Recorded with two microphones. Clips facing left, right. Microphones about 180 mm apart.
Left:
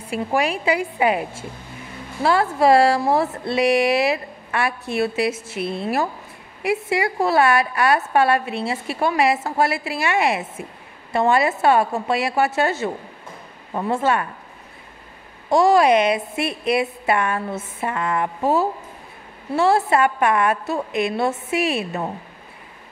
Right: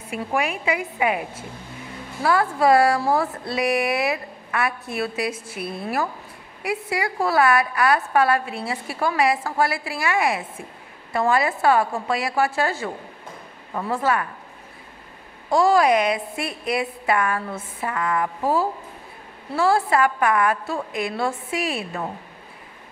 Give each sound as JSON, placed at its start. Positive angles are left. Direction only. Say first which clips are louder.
{"t": 0.1, "sound": "a woman's voice", "louder": "left 3 dB", "side_deg": 30}
{"t": 15.5, "sound": "a woman's voice", "louder": "left 2 dB", "side_deg": 25}